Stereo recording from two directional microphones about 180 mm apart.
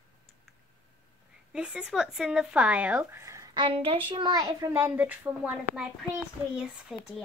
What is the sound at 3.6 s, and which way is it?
A woman's voice, 30° right (ahead or behind).